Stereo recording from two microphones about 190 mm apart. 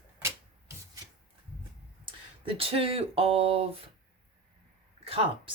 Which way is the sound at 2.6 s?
30° right (ahead or behind).